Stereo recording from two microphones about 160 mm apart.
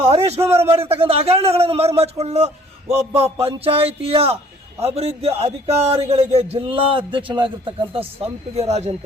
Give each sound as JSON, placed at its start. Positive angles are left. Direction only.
{"t": 0.1, "sound": "a sound", "side_deg": -40}
{"t": 0.4, "sound": "a man's voice", "side_deg": -15}
{"t": 0.7, "sound": "a man's voice", "side_deg": -35}